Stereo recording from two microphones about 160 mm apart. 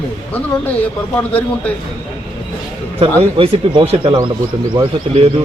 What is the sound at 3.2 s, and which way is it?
Speech, 35° right (ahead or behind).